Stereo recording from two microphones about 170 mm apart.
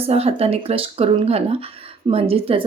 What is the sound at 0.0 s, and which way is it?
Speech, 35° right (ahead or behind).